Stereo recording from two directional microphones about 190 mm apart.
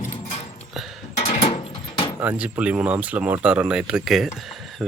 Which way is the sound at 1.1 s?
35° left (ahead or behind).